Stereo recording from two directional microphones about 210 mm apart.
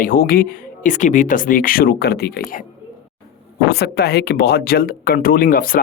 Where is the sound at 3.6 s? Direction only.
50° left (ahead or behind).